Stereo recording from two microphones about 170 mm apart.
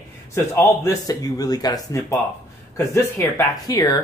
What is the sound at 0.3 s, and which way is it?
Speech, 15° left (ahead or behind).